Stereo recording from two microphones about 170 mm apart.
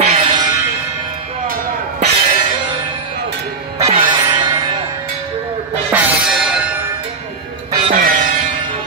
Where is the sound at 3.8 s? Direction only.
30° right (ahead or behind).